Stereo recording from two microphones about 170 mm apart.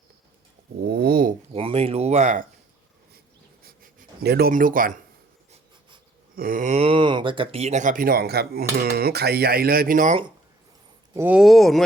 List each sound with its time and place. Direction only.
0.8 s dog: 65° right (ahead or behind)
1.5 s speech: 35° right (ahead or behind)
3.6 s writing: 60° right (ahead or behind)
6.3 s speech: 55° right (ahead or behind)
11.1 s speech: 10° right (ahead or behind)